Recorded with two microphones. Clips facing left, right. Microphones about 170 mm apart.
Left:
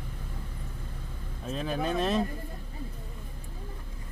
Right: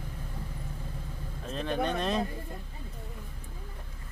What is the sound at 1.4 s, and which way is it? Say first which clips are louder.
Speech: even; 5° left (ahead or behind).